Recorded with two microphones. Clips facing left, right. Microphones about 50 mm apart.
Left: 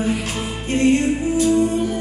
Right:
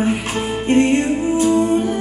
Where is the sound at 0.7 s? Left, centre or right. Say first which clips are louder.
Right 2 dB; right.